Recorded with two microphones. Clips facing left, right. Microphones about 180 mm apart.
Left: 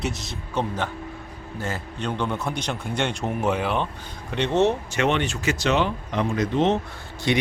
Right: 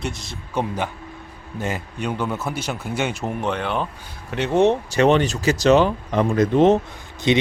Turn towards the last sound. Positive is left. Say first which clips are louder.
# right 4 dB
turn(degrees=-20)  # may be behind; listen again after turning